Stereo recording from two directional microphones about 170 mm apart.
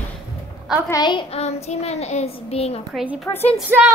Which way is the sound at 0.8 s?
25° left (ahead or behind).